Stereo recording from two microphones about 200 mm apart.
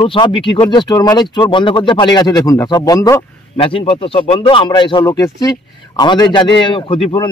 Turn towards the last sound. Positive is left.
turn(degrees=25)  # may be behind; listen again after turning